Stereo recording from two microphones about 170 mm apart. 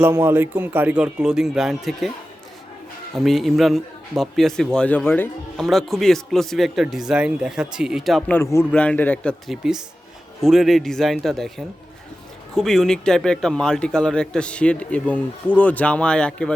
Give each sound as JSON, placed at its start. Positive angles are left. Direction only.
{"t": 0.0, "sound": "speech", "side_deg": -15}
{"t": 3.2, "sound": "a man's voice", "side_deg": 0}
{"t": 5.5, "sound": "a man's voice", "side_deg": 0}
{"t": 8.3, "sound": "a man's voice", "side_deg": 15}